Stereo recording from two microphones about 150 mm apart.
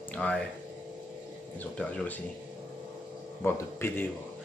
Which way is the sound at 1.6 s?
10° left (ahead or behind).